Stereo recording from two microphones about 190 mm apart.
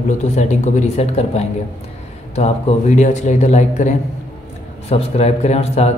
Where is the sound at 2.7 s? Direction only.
35° left (ahead or behind).